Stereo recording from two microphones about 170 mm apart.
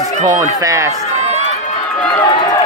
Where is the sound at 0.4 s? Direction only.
20° right (ahead or behind).